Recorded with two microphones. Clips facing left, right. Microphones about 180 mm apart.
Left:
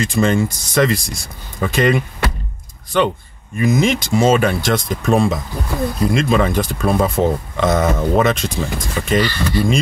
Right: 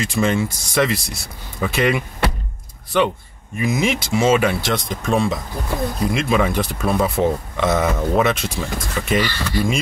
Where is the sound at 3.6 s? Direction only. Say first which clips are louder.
Left 4 dB; 5° right (ahead or behind).